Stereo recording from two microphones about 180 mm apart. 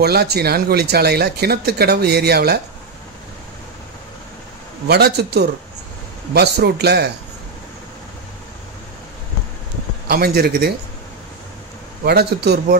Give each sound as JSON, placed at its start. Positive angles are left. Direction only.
{"t": 0.0, "sound": "speech", "side_deg": -65}
{"t": 4.8, "sound": "speech", "side_deg": -65}
{"t": 10.0, "sound": "speech", "side_deg": -60}
{"t": 12.0, "sound": "speech", "side_deg": -60}